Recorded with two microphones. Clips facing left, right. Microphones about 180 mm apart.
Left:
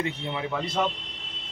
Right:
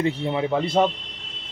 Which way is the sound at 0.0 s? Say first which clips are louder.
Right 7 dB; 35° right (ahead or behind).